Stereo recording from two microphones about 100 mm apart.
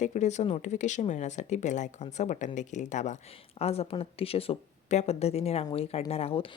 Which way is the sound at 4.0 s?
75° left (ahead or behind).